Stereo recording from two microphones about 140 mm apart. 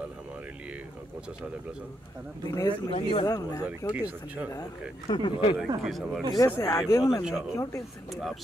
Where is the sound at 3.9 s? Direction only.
10° right (ahead or behind).